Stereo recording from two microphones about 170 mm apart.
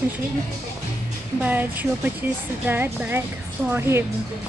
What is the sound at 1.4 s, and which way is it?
Child singing, 10° right (ahead or behind).